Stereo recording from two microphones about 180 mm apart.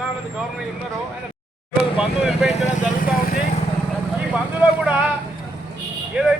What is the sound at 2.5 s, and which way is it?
Vehicle, 40° left (ahead or behind).